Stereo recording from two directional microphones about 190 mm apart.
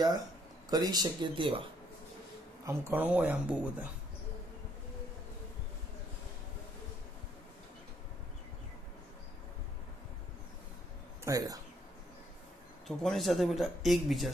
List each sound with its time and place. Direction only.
0.7 s speech: 20° right (ahead or behind)
2.6 s speech: 15° right (ahead or behind)
11.2 s speech: 20° right (ahead or behind)
12.8 s speech: centre (ahead or behind)